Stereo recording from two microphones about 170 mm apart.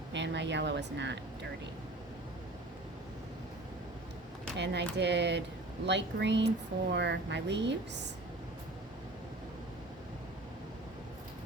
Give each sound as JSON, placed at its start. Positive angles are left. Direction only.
{"t": 0.1, "sound": "a woman's voice", "side_deg": -90}
{"t": 4.5, "sound": "speech", "side_deg": -80}